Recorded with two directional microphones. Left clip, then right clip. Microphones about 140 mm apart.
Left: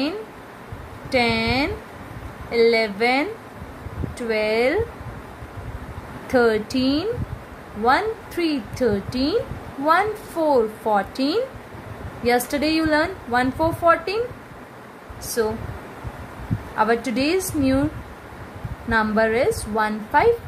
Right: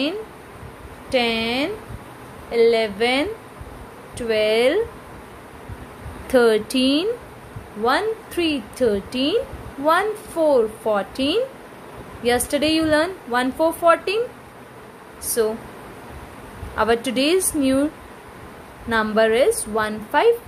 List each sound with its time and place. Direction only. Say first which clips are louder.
1.1 s a woman's voice: even; 15° right (ahead or behind)
4.3 s a woman's voice: right 3 dB; 25° right (ahead or behind)
6.2 s a woman's voice: right 2 dB; 25° right (ahead or behind)
15.4 s a woman's voice: right 2 dB; 25° right (ahead or behind)
16.7 s a woman's voice: right 1 dB; 25° right (ahead or behind)
18.9 s a woman's voice: right 2 dB; 30° right (ahead or behind)